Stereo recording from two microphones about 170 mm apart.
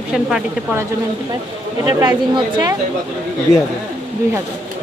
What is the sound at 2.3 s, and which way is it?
Speech, 25° right (ahead or behind).